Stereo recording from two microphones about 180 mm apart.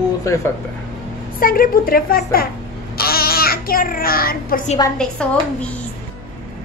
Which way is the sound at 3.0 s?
55° left (ahead or behind).